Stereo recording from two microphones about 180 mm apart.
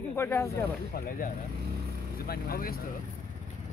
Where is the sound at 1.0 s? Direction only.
50° left (ahead or behind).